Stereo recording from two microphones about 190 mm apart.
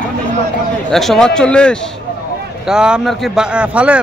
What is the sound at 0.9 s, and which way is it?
Speech, centre (ahead or behind).